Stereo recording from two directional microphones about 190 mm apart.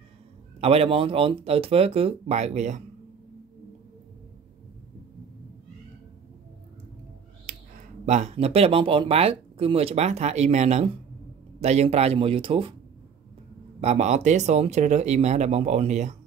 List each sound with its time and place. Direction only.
0.6 s speech: 30° right (ahead or behind)
7.5 s a sound: 45° right (ahead or behind)
8.0 s speech: 35° right (ahead or behind)
13.7 s speech: 35° right (ahead or behind)